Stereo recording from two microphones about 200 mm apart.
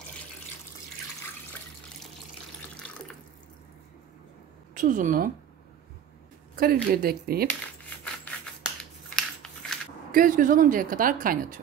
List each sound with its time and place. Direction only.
4.7 s speech: 40° right (ahead or behind)
6.5 s speech: 50° right (ahead or behind)
9.1 s scissors: 5° left (ahead or behind)
10.1 s speech: 40° right (ahead or behind)